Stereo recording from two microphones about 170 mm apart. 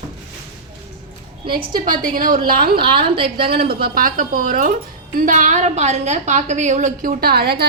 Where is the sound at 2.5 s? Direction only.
65° right (ahead or behind).